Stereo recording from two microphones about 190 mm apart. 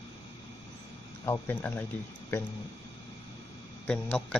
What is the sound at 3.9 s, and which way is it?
Speech, 5° left (ahead or behind).